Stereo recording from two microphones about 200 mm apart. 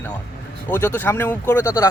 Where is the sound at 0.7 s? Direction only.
10° left (ahead or behind).